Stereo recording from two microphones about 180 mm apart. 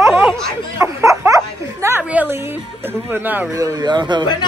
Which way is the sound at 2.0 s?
10° right (ahead or behind).